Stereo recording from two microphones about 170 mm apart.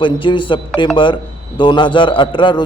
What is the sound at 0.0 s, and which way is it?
A man's voice, 30° left (ahead or behind).